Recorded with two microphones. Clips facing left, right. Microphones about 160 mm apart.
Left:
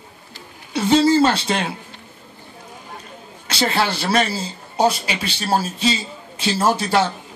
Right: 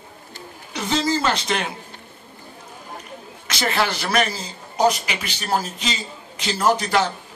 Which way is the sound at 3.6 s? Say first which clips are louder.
Left 2 dB; 30° left (ahead or behind).